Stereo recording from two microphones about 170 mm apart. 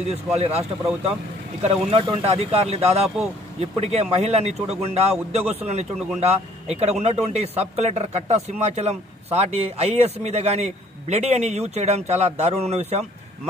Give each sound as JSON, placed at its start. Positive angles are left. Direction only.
{"t": 0.0, "sound": "speech", "side_deg": -40}